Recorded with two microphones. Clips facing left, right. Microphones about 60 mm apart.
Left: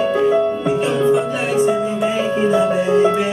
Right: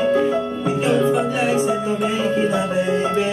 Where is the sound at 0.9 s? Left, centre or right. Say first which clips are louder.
Even; centre.